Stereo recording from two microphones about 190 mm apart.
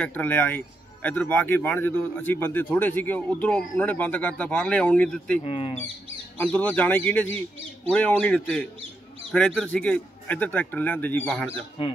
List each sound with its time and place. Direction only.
0.0 s speech: 10° left (ahead or behind)
5.4 s speech: 30° left (ahead or behind)
6.3 s speech: 10° left (ahead or behind)